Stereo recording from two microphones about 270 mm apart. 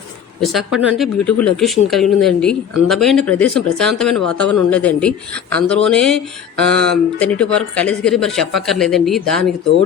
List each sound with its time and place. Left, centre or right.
0.4 s speech: centre